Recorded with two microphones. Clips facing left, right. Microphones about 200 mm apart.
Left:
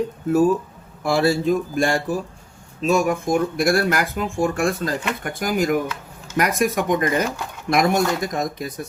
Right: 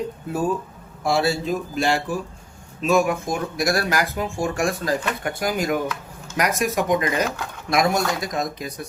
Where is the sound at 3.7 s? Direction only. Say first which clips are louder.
Left 1 dB; 55° left (ahead or behind).